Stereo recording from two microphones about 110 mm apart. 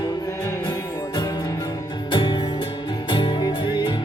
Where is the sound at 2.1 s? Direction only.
45° left (ahead or behind).